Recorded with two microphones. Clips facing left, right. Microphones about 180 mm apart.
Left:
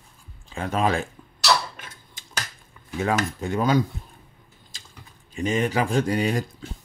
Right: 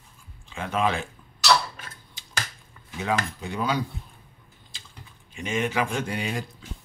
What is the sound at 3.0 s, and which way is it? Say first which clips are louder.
Speech: left 3 dB; 50° left (ahead or behind).